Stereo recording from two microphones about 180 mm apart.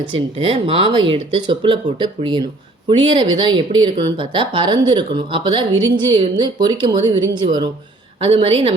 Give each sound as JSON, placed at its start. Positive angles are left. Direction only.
{"t": 0.1, "sound": "speech", "side_deg": -30}